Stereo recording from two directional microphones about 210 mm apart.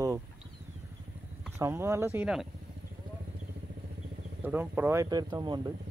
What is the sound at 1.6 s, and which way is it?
Speech, 15° right (ahead or behind).